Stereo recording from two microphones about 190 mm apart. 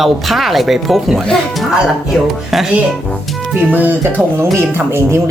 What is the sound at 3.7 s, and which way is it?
Speech, 10° right (ahead or behind).